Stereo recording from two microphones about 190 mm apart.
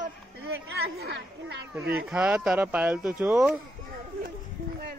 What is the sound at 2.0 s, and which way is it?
Speech, 5° right (ahead or behind).